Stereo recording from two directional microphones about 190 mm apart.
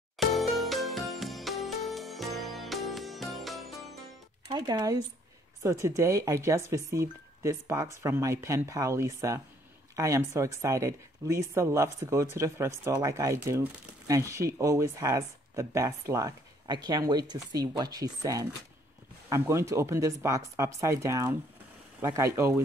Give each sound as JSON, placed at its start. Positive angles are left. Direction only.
{"t": 0.2, "sound": "music", "side_deg": 0}
{"t": 4.5, "sound": "speech", "side_deg": -25}